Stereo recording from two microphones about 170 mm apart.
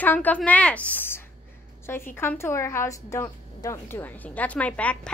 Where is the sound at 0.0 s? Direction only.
10° left (ahead or behind).